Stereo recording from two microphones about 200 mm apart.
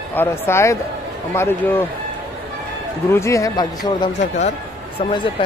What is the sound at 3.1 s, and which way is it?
Speech, 15° left (ahead or behind).